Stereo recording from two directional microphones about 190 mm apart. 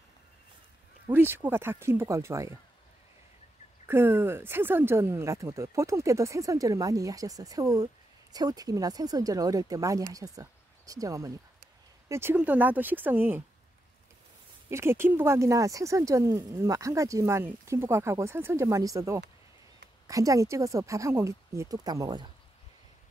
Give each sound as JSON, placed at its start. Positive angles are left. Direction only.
{"t": 1.1, "sound": "speech", "side_deg": -10}
{"t": 3.8, "sound": "speech", "side_deg": -10}
{"t": 14.7, "sound": "speech", "side_deg": -15}